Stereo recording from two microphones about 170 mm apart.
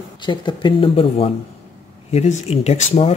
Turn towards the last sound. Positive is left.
turn(degrees=40)  # may be behind; listen again after turning